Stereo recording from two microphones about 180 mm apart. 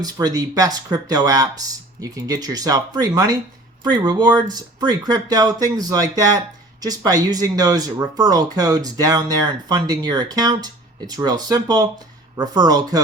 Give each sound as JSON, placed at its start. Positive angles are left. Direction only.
{"t": 0.0, "sound": "speech", "side_deg": -20}